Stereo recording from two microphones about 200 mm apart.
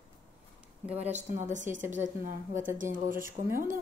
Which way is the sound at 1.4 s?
40° right (ahead or behind).